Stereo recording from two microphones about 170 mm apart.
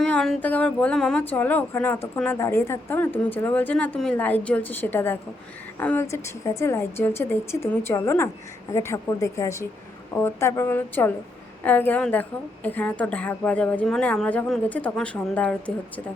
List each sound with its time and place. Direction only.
0.0 s speech: 5° left (ahead or behind)